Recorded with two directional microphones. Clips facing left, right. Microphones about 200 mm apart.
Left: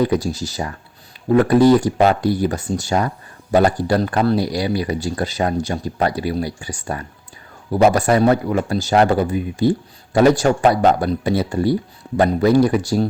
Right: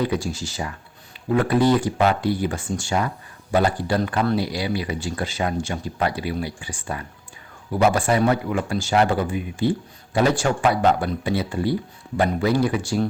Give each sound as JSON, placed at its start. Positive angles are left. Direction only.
{"t": 0.0, "sound": "speech", "side_deg": 40}